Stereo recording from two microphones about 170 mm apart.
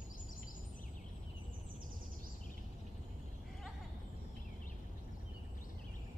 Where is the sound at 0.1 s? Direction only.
50° left (ahead or behind).